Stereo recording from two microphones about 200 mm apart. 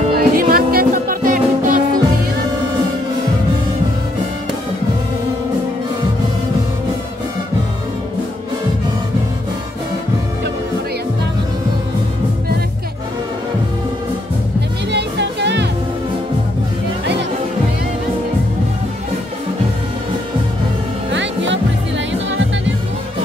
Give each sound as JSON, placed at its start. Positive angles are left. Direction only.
{"t": 0.1, "sound": "music", "side_deg": -50}
{"t": 14.9, "sound": "music", "side_deg": -60}
{"t": 17.0, "sound": "music", "side_deg": -60}
{"t": 21.1, "sound": "music", "side_deg": -65}